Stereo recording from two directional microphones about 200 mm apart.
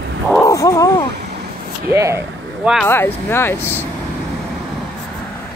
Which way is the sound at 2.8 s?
10° left (ahead or behind).